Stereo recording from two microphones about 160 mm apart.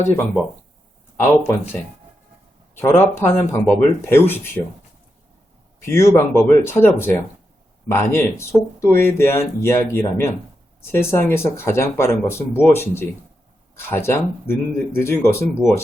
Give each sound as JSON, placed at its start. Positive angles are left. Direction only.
{"t": 0.1, "sound": "speech", "side_deg": 15}
{"t": 2.7, "sound": "speech", "side_deg": 15}
{"t": 5.8, "sound": "speech", "side_deg": 15}